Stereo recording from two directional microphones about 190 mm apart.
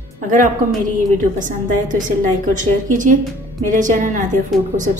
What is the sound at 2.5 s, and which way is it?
A woman's voice, 45° right (ahead or behind).